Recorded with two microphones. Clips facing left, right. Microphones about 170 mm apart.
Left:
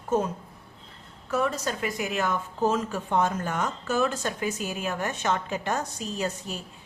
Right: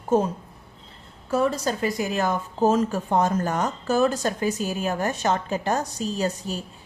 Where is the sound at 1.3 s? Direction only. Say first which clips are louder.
Right 4 dB; 35° right (ahead or behind).